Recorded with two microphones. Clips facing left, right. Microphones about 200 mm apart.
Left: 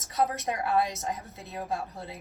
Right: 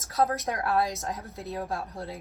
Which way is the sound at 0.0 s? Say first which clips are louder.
Right 2 dB; centre (ahead or behind).